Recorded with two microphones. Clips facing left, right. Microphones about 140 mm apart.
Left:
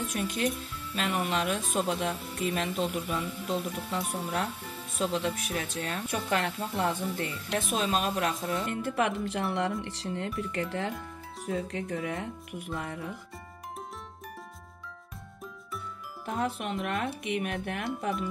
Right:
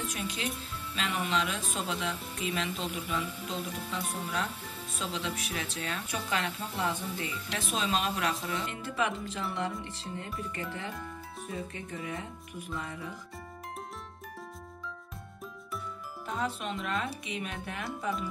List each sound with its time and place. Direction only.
0.1 s speech: 50° left (ahead or behind)
8.5 s speech: 55° left (ahead or behind)
9.8 s speech: 80° left; by 13.1 s 60° left (ahead or behind)
16.3 s speech: 60° left (ahead or behind)